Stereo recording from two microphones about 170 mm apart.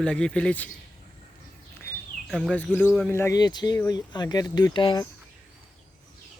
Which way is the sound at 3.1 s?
15° left (ahead or behind).